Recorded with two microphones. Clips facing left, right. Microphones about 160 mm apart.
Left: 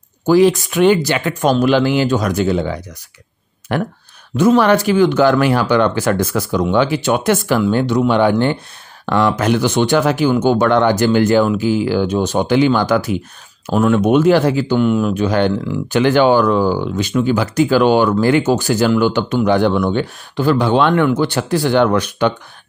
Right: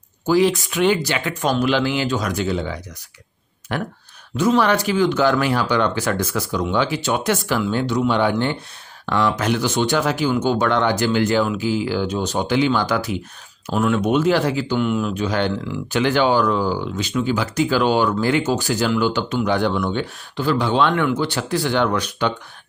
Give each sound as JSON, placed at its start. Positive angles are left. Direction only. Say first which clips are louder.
{"t": 0.3, "sound": "speech", "louder": "left 5 dB", "side_deg": 50}
{"t": 4.4, "sound": "speech", "louder": "left 5 dB", "side_deg": 50}